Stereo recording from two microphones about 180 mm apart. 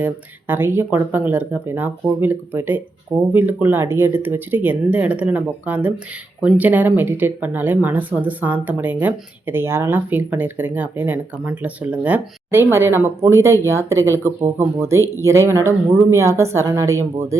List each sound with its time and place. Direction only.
0.0 s speech: 10° right (ahead or behind)